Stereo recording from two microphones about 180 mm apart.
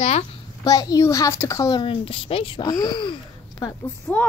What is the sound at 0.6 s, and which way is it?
A woman's voice, 20° left (ahead or behind).